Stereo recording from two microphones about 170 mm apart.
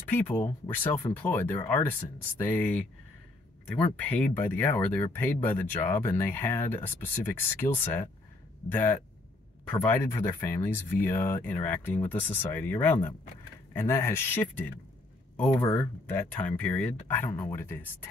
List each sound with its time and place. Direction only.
0.1 s speech: 10° left (ahead or behind)
15.6 s speech: 15° left (ahead or behind)
17.3 s speech: 20° left (ahead or behind)